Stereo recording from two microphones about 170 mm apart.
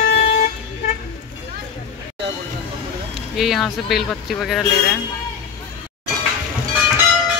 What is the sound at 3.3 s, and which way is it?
Speech, centre (ahead or behind).